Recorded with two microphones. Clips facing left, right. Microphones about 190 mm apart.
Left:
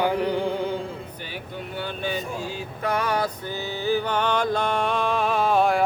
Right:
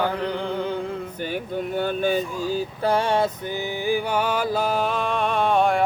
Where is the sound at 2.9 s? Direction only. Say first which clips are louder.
Right 3 dB; 30° right (ahead or behind).